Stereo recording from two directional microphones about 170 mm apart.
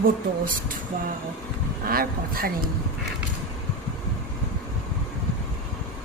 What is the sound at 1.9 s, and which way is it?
Speech, 60° right (ahead or behind).